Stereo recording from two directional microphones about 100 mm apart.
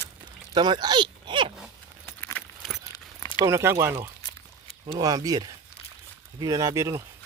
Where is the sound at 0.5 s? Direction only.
50° right (ahead or behind).